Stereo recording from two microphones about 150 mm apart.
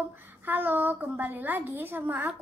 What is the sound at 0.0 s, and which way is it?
A woman's voice, 15° right (ahead or behind).